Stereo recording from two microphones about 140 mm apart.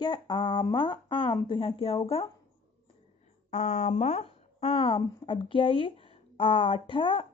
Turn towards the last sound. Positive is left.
turn(degrees=40)  # may be behind; listen again after turning